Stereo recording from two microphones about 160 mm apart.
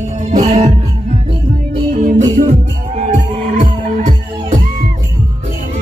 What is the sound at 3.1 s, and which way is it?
Music, 55° right (ahead or behind).